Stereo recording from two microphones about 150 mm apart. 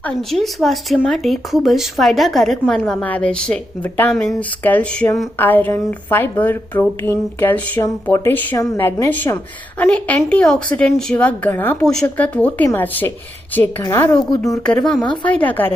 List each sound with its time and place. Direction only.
0.0 s a woman's voice: centre (ahead or behind)
7.3 s a woman's voice: 15° left (ahead or behind)
14.6 s a woman's voice: 5° left (ahead or behind)